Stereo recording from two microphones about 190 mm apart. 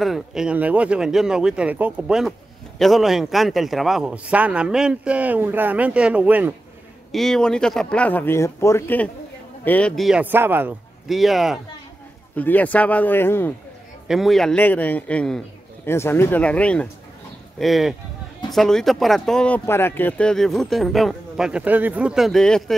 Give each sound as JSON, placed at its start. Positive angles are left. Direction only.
{"t": 0.0, "sound": "speech", "side_deg": 0}
{"t": 11.1, "sound": "speech", "side_deg": 0}
{"t": 14.0, "sound": "a man's voice", "side_deg": 0}